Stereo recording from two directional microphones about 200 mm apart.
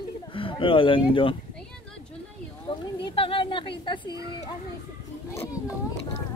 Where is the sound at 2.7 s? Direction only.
25° left (ahead or behind).